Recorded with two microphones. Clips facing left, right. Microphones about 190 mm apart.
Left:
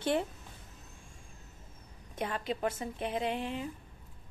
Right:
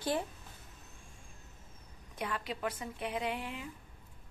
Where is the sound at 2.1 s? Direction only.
25° left (ahead or behind).